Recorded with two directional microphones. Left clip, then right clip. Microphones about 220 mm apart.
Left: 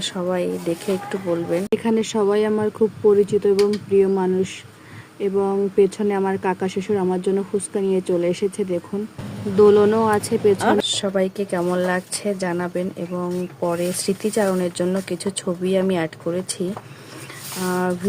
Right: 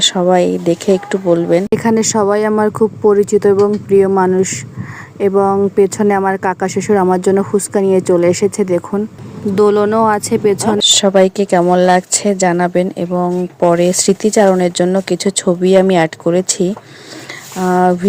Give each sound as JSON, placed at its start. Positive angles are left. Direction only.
{"t": 0.0, "sound": "speech", "side_deg": -30}